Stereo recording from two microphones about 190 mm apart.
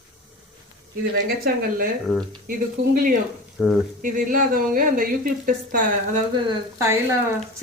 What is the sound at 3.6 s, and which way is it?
Speech, 5° right (ahead or behind).